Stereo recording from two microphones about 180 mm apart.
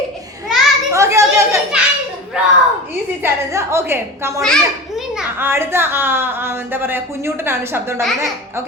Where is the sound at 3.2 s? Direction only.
15° right (ahead or behind).